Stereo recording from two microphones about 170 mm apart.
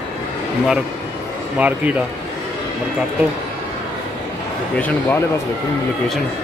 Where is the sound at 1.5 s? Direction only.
10° right (ahead or behind).